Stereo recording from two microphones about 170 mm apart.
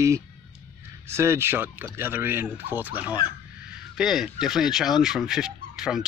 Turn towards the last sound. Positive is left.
turn(degrees=-5)  # may be behind; listen again after turning